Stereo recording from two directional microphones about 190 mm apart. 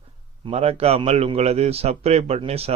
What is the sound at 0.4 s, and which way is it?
A man's voice, 35° right (ahead or behind).